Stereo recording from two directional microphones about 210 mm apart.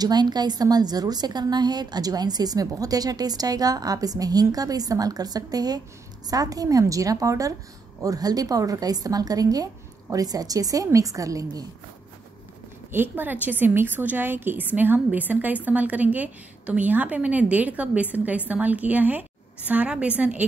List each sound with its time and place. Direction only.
0.0 s a woman's voice: 20° right (ahead or behind)
12.9 s a woman's voice: 10° right (ahead or behind)